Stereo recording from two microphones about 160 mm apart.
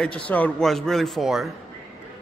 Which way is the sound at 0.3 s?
5° left (ahead or behind).